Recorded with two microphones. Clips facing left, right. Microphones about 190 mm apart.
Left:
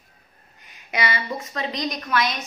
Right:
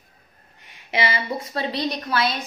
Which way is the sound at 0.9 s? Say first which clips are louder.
Right 2 dB; 25° right (ahead or behind).